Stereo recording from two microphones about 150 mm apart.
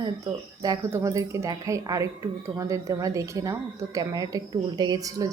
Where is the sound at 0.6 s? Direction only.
20° right (ahead or behind).